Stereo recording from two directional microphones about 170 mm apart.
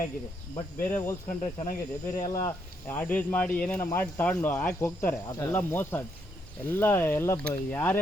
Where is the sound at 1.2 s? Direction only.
50° left (ahead or behind).